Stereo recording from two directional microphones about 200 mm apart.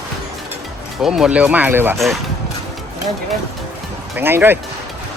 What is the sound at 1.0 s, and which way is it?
Speech, centre (ahead or behind).